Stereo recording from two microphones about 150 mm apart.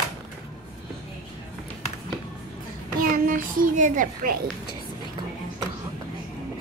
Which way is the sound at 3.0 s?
65° right (ahead or behind).